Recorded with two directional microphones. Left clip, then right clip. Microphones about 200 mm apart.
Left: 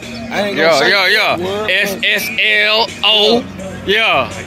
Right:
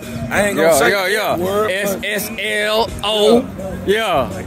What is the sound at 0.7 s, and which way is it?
Speech, 10° right (ahead or behind).